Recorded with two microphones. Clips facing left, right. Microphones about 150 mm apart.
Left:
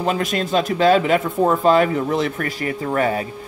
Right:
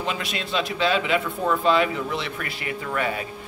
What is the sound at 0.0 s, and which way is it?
Speech, 45° left (ahead or behind).